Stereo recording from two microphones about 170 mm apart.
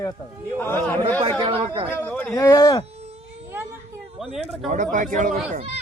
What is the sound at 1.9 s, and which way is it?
Speech, 10° left (ahead or behind).